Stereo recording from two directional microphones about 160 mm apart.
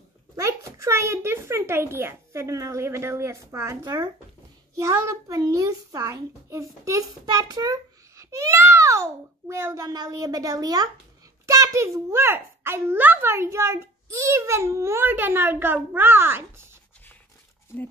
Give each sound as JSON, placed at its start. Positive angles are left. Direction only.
{"t": 0.4, "sound": "a child's voice", "side_deg": -20}